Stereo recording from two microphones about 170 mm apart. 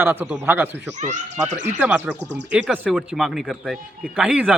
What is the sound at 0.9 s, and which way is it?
Speech, 45° right (ahead or behind).